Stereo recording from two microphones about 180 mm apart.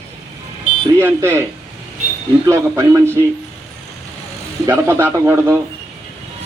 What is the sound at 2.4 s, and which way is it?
Speech, 15° right (ahead or behind).